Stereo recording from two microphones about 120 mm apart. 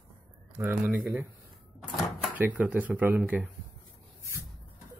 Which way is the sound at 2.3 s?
10° right (ahead or behind).